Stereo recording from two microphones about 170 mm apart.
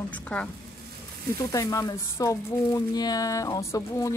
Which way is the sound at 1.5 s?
20° left (ahead or behind).